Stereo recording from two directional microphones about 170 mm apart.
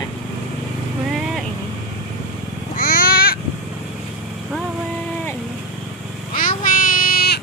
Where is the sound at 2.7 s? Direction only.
55° left (ahead or behind).